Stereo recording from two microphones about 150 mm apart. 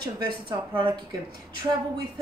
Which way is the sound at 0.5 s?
35° right (ahead or behind).